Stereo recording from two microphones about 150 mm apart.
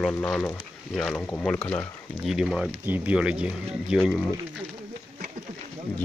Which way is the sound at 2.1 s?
5° right (ahead or behind).